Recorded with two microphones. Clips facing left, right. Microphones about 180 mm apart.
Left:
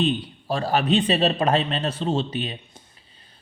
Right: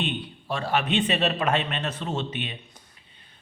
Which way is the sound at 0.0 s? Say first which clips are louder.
Left 7 dB; 35° left (ahead or behind).